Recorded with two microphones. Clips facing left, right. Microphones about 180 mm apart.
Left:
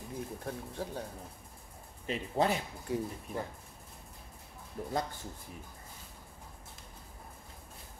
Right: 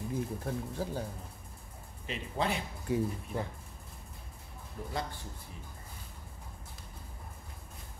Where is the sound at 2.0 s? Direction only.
40° left (ahead or behind).